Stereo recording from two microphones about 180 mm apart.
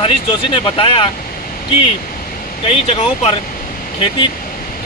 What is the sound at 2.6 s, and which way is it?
Speech, 35° left (ahead or behind).